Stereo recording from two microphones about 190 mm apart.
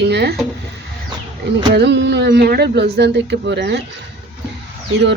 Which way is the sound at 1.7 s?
65° right (ahead or behind).